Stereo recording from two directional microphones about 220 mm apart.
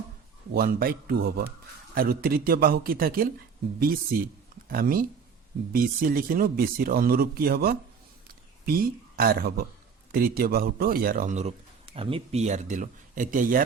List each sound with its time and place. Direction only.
0.5 s speech: 40° right (ahead or behind)
8.3 s a sound: 40° right (ahead or behind)
10.1 s speech: 40° right (ahead or behind)